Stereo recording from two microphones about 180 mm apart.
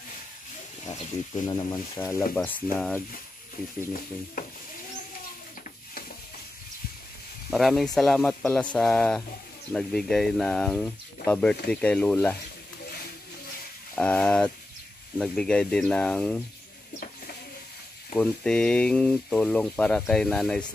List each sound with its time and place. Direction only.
1.4 s speech: 25° left (ahead or behind)
7.5 s speech: centre (ahead or behind)
13.9 s speech: 5° left (ahead or behind)
18.1 s speech: 5° left (ahead or behind)